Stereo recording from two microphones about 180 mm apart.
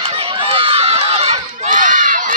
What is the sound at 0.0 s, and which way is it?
Run, 30° right (ahead or behind).